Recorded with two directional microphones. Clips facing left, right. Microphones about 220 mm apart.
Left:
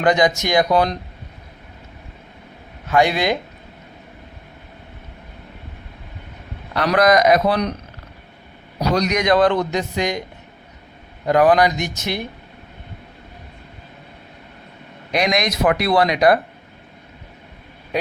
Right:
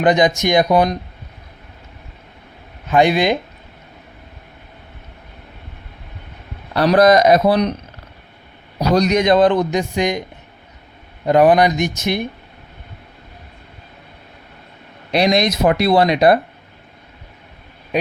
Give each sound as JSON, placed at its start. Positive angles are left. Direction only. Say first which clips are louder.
{"t": 0.0, "sound": "speech", "louder": "right 2 dB", "side_deg": -20}
{"t": 2.9, "sound": "speech", "louder": "right 3 dB", "side_deg": -20}
{"t": 6.7, "sound": "speech", "louder": "right 4 dB", "side_deg": -30}
{"t": 9.0, "sound": "speech", "louder": "right 3 dB", "side_deg": -25}
{"t": 11.3, "sound": "speech", "louder": "right 2 dB", "side_deg": -20}
{"t": 15.1, "sound": "speech", "louder": "right 4 dB", "side_deg": -30}